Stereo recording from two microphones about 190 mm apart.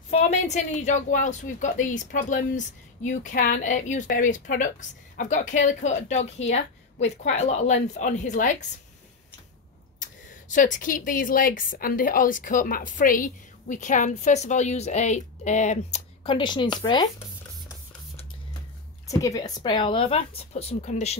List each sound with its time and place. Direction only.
0.1 s a woman's voice: 35° left (ahead or behind)
10.5 s a woman's voice: 40° left (ahead or behind); by 17.1 s 25° left (ahead or behind)
19.0 s a woman's voice: 15° left (ahead or behind); by 21.2 s 35° left (ahead or behind)